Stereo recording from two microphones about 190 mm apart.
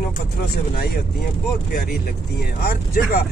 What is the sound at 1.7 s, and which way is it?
Speech, 55° left (ahead or behind).